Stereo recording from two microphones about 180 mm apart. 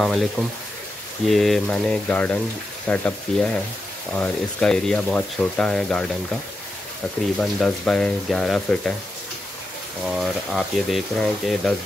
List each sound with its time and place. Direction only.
0.0 s speech: centre (ahead or behind)
1.3 s speech: centre (ahead or behind)
7.3 s speech: 5° left (ahead or behind)
10.0 s speech: centre (ahead or behind)